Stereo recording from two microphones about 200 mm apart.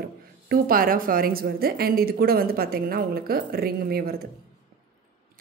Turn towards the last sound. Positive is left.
turn(degrees=-50)  # may be behind; listen again after turning